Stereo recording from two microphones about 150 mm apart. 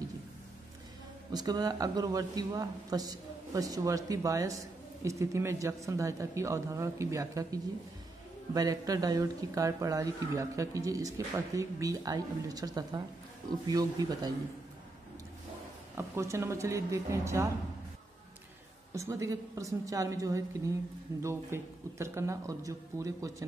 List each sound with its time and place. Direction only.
1.3 s a man's voice: 25° right (ahead or behind)
16.0 s a man's voice: 20° right (ahead or behind)
18.9 s a man's voice: 20° right (ahead or behind)